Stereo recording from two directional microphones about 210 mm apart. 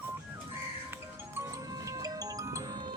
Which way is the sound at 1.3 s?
15° right (ahead or behind).